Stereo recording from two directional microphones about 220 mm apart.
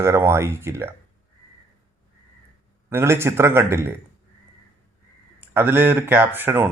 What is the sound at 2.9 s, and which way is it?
Speech, 10° right (ahead or behind).